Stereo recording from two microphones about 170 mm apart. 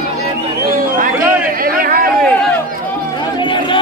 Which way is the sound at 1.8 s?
55° right (ahead or behind).